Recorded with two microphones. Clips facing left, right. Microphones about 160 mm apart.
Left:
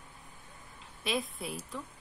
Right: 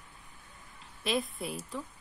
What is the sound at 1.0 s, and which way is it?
Speech, centre (ahead or behind).